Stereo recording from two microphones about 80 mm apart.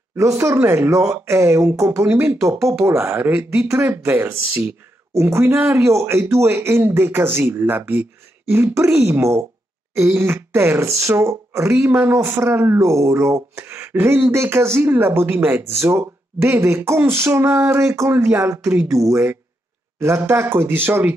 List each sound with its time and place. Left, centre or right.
0.1 s speech: right
3.3 s speech: right
3.6 s speech: right